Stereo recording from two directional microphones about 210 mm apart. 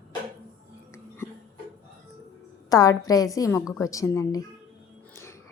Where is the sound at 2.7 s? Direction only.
15° left (ahead or behind).